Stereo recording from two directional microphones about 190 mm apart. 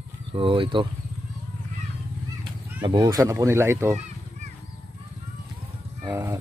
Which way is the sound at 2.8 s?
20° right (ahead or behind).